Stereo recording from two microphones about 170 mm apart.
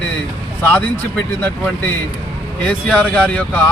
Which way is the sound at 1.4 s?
10° left (ahead or behind).